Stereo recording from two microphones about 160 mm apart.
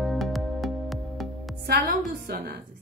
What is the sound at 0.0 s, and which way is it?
Music, centre (ahead or behind).